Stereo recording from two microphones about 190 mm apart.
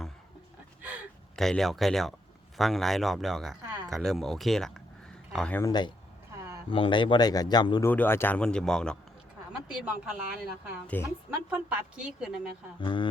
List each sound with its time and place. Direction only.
0.8 s gasp: 5° right (ahead or behind)
2.6 s speech: centre (ahead or behind)
5.6 s speech: 20° left (ahead or behind)
7.9 s speech: 10° left (ahead or behind)
9.5 s a woman's voice: 5° right (ahead or behind)
10.8 s a woman's voice: 10° left (ahead or behind)
11.4 s speech: 5° right (ahead or behind)
12.8 s speech: 25° left (ahead or behind)